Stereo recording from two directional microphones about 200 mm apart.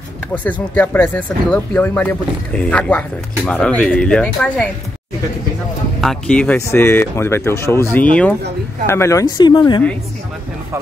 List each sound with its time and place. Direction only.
0.3 s speech: 5° left (ahead or behind)
5.9 s speech: 5° left (ahead or behind); by 9.8 s 20° left (ahead or behind)